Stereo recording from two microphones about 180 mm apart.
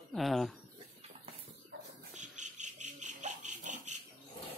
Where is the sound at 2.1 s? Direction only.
40° right (ahead or behind).